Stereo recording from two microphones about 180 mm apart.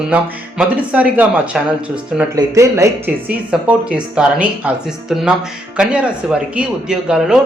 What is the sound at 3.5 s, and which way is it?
Speech, 5° right (ahead or behind).